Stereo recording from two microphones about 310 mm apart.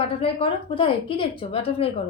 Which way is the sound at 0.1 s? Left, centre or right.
Centre.